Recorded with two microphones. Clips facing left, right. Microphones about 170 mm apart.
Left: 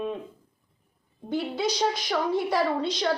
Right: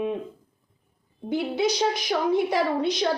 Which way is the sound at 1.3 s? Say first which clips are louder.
Right 3 dB; 20° right (ahead or behind).